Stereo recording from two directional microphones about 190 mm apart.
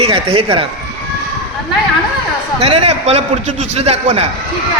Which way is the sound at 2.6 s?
30° right (ahead or behind).